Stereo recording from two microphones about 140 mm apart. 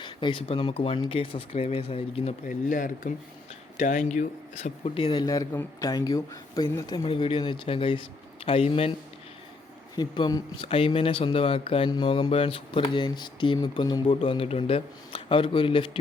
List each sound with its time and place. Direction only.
0.0 s speech: 35° left (ahead or behind)
2.5 s speech: 70° left (ahead or behind); by 4.9 s 55° left (ahead or behind)
4.9 s speech: 35° left (ahead or behind)
9.9 s speech: 30° left (ahead or behind)